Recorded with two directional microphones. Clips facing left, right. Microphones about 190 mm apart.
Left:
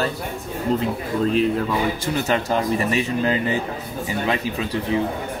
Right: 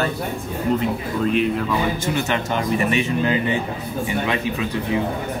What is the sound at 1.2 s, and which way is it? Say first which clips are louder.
Speech: left 1 dB; 35° left (ahead or behind).